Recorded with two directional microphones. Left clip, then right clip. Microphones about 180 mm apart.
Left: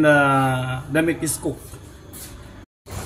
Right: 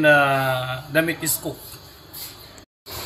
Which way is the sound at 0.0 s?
20° left (ahead or behind).